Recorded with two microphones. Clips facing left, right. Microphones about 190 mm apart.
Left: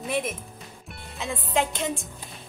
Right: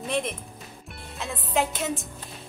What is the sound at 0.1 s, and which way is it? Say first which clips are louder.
Speech: even; 5° left (ahead or behind).